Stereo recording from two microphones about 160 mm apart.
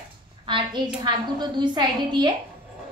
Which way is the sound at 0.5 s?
30° right (ahead or behind).